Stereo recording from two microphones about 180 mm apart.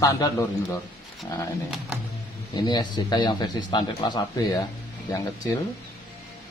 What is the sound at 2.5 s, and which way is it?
Speech, 25° left (ahead or behind).